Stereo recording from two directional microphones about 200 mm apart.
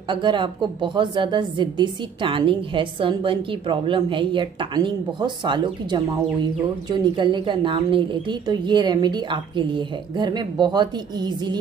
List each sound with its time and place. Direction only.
0.1 s a woman's voice: 25° right (ahead or behind)